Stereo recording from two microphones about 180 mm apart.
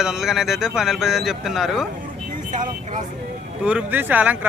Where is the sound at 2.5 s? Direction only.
45° right (ahead or behind).